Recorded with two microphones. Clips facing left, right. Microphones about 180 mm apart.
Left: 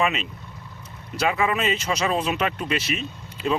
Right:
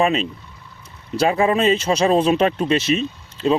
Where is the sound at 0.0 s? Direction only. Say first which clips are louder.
Right 6 dB; 35° right (ahead or behind).